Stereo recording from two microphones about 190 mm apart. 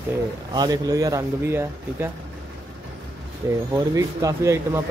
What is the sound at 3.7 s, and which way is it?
Speech, 15° right (ahead or behind).